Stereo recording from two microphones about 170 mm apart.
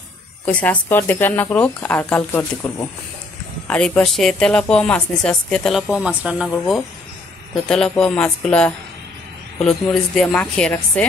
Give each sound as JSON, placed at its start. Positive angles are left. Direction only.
{"t": 0.5, "sound": "speech", "side_deg": 10}
{"t": 7.6, "sound": "speech", "side_deg": 5}